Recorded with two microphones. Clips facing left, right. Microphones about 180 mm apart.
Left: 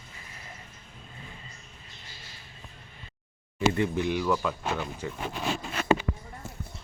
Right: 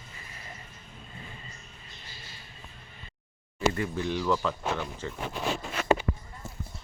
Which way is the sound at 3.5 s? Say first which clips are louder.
Left 3 dB; 20° left (ahead or behind).